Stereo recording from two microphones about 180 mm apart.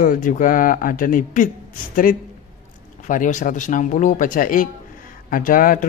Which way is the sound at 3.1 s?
45° left (ahead or behind).